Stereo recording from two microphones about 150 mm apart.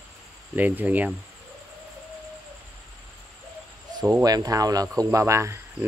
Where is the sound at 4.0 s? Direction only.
25° right (ahead or behind).